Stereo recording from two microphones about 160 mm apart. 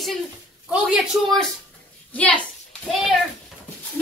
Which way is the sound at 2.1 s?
10° left (ahead or behind).